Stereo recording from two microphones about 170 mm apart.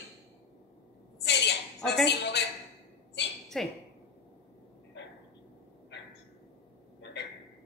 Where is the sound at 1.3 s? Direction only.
90° left.